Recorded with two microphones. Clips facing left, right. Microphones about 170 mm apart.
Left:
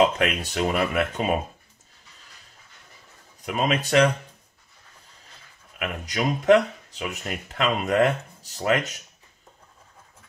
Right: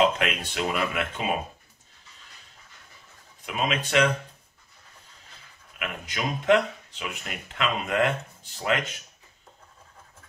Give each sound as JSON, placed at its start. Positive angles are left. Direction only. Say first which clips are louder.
{"t": 0.2, "sound": "speech", "louder": "left 4 dB", "side_deg": 40}
{"t": 3.4, "sound": "speech", "louder": "left 4 dB", "side_deg": 40}
{"t": 5.8, "sound": "speech", "louder": "left 5 dB", "side_deg": 40}